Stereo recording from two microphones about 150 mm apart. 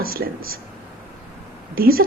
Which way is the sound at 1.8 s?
80° right.